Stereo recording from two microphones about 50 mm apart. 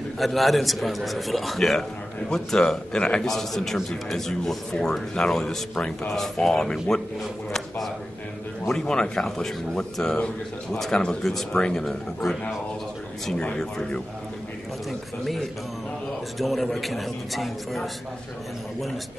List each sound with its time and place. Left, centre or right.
0.2 s a man's voice: centre
3.3 s a man's voice: centre
8.6 s speech: centre
14.9 s a man's voice: centre